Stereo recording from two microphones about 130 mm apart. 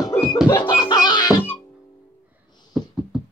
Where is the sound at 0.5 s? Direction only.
35° left (ahead or behind).